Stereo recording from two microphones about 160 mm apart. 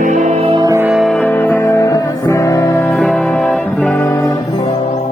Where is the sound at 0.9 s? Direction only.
Centre (ahead or behind); by 4.6 s 20° left (ahead or behind).